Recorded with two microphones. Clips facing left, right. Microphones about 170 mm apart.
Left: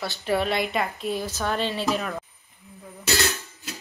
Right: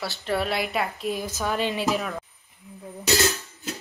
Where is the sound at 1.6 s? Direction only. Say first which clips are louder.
Right 2 dB; 10° right (ahead or behind).